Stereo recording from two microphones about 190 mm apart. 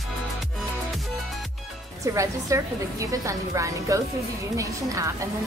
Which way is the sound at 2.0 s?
15° right (ahead or behind).